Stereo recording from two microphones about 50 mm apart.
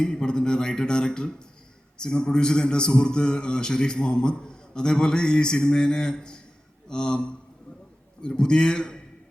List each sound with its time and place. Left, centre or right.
0.0 s a man's voice: centre